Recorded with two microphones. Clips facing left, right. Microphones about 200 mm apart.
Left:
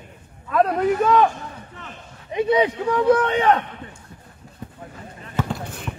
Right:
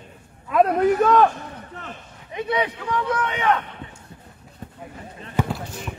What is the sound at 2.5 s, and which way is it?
A man's voice, 25° left (ahead or behind).